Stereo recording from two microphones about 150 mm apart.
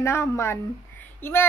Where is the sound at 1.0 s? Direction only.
15° left (ahead or behind).